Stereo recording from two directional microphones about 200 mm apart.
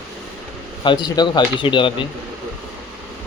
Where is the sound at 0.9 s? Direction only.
20° left (ahead or behind).